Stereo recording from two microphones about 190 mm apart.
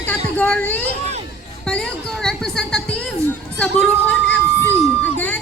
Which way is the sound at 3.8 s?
5° left (ahead or behind).